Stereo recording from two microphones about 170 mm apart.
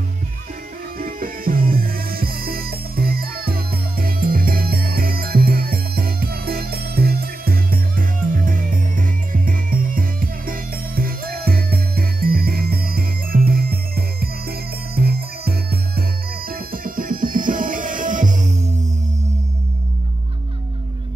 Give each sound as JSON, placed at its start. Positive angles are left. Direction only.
{"t": 0.9, "sound": "music", "side_deg": -55}